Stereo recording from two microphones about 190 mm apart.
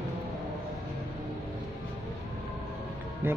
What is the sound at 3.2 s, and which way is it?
Speech, 10° right (ahead or behind).